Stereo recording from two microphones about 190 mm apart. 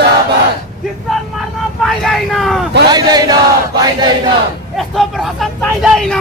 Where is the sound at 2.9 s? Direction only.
20° right (ahead or behind).